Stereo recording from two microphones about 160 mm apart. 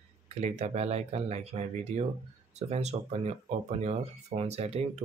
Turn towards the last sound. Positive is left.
turn(degrees=-40)  # may be behind; listen again after turning